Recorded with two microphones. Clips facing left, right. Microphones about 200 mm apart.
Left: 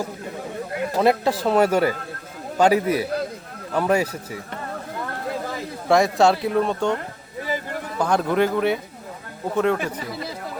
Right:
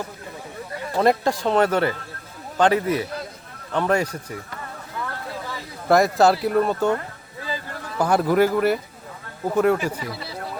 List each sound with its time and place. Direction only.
0.9 s a man's voice: 5° left (ahead or behind)
5.9 s speech: centre (ahead or behind)
7.4 s a sound: 20° left (ahead or behind)
7.9 s speech: 5° right (ahead or behind)